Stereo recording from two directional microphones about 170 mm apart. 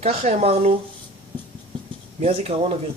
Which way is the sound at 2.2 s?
35° right (ahead or behind).